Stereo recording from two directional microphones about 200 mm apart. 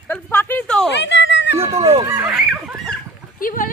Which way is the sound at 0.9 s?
65° left (ahead or behind).